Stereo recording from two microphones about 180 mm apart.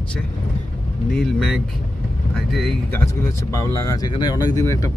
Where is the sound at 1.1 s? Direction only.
Centre (ahead or behind).